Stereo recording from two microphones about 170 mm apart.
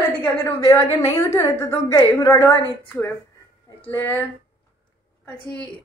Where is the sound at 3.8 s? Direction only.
15° left (ahead or behind).